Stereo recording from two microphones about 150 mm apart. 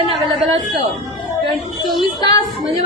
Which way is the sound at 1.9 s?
30° left (ahead or behind).